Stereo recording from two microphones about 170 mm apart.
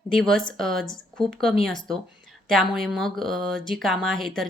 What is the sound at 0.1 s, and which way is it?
A woman's voice, centre (ahead or behind).